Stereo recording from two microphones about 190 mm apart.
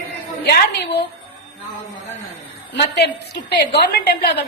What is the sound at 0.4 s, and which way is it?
Speech, 60° left (ahead or behind).